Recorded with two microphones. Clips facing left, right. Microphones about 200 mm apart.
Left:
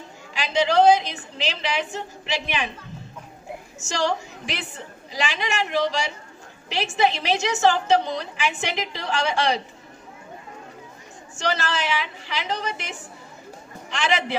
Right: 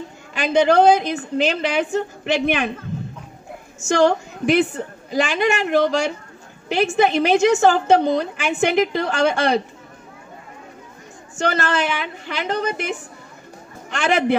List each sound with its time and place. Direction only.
0.3 s a woman's voice: 55° right (ahead or behind)
3.8 s a woman's voice: 55° right (ahead or behind)
11.3 s a woman's voice: 55° right (ahead or behind)